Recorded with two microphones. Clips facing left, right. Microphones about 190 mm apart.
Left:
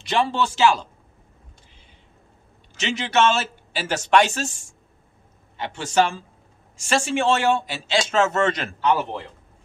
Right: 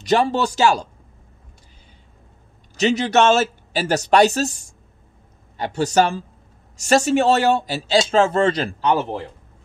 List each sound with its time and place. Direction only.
0.0 s speech: 40° right (ahead or behind)
2.7 s speech: 40° right (ahead or behind)